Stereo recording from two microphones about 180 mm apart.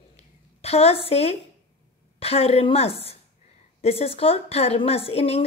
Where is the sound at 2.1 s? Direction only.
35° left (ahead or behind).